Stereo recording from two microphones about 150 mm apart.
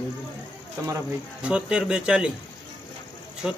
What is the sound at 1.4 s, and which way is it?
Speech, 5° right (ahead or behind).